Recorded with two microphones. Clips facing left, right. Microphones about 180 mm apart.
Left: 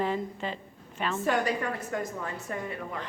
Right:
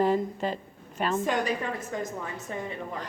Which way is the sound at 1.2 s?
20° right (ahead or behind).